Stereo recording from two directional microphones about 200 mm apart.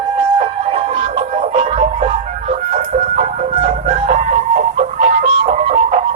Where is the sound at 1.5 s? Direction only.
35° right (ahead or behind).